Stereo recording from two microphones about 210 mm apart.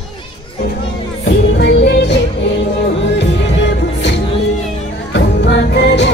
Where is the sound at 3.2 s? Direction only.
55° left (ahead or behind).